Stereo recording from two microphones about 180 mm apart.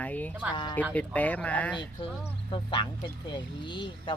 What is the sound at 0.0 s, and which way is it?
Speech, 10° left (ahead or behind).